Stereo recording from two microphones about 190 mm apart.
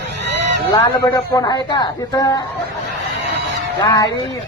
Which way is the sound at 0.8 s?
20° left (ahead or behind).